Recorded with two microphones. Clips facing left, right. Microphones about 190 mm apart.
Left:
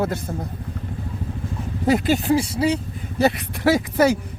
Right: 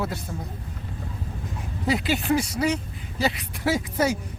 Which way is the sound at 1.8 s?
50° left (ahead or behind).